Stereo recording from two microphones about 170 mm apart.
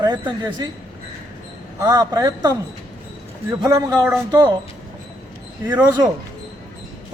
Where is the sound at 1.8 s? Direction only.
25° right (ahead or behind).